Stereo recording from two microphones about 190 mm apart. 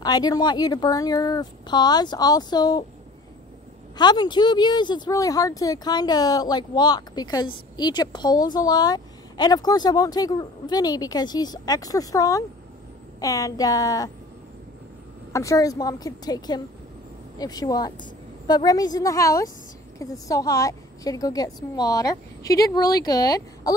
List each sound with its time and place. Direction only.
0.0 s speech: 20° left (ahead or behind)
4.0 s speech: 20° left (ahead or behind)
15.3 s speech: 15° left (ahead or behind)